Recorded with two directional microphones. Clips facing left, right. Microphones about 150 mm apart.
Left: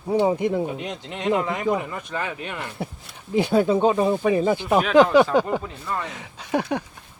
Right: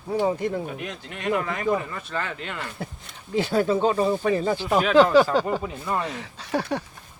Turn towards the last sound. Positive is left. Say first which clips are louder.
# left 2 dB
turn(degrees=15)  # may be behind; listen again after turning